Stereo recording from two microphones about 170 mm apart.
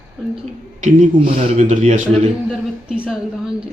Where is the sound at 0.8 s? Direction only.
50° right (ahead or behind).